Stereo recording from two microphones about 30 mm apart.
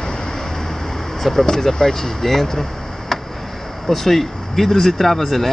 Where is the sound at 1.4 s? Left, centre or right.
Left.